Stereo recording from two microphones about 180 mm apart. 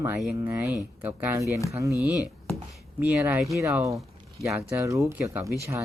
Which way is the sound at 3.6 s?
15° right (ahead or behind).